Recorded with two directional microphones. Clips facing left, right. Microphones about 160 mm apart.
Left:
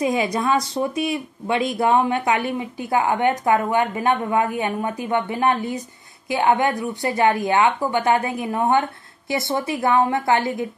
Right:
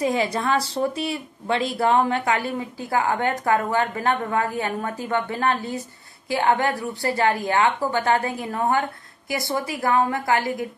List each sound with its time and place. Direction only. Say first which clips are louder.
0.0 s speech: left 2 dB; 15° left (ahead or behind)
1.8 s a woman's voice: left 1 dB; 15° left (ahead or behind)